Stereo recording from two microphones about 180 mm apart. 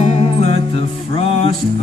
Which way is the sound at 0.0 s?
40° left (ahead or behind).